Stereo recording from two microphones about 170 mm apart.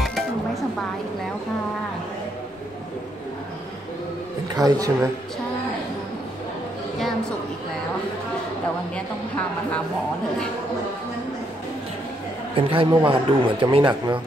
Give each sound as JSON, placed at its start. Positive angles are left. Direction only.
{"t": 0.0, "sound": "music", "side_deg": 0}
{"t": 4.6, "sound": "speech", "side_deg": -20}
{"t": 12.5, "sound": "speech", "side_deg": -30}